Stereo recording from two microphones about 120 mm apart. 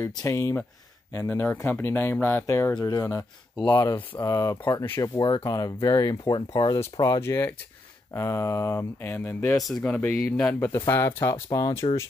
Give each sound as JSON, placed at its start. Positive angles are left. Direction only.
{"t": 0.2, "sound": "speech", "side_deg": 25}
{"t": 2.8, "sound": "speech", "side_deg": 30}
{"t": 9.6, "sound": "speech", "side_deg": 0}
{"t": 9.8, "sound": "speech", "side_deg": 10}